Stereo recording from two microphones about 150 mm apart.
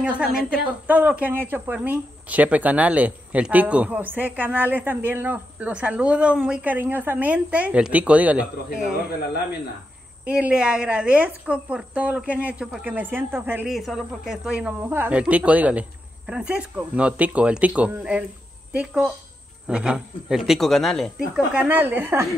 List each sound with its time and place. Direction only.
0.8 s speech: 10° right (ahead or behind)
9.2 s speech: 90° left
10.2 s speech: 5° right (ahead or behind)
13.7 s a woman's voice: centre (ahead or behind)
21.5 s speech: 10° right (ahead or behind)